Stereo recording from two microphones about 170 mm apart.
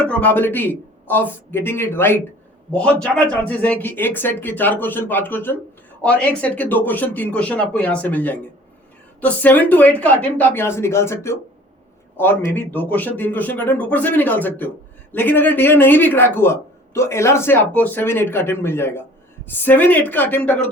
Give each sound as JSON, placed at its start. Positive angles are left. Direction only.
{"t": 0.1, "sound": "a man's voice", "side_deg": 10}